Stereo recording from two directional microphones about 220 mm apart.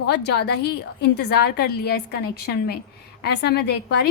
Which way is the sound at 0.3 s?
50° left (ahead or behind).